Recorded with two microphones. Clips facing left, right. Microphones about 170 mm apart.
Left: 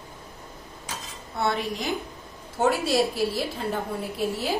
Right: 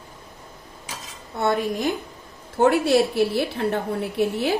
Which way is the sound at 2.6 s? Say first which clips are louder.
Right 5 dB; 65° right (ahead or behind).